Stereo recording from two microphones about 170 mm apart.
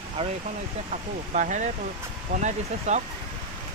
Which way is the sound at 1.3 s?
45° right (ahead or behind).